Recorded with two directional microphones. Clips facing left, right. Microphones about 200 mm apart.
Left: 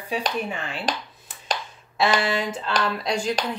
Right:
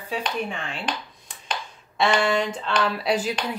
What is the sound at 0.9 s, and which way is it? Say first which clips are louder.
Speech: left 3 dB; 40° left (ahead or behind).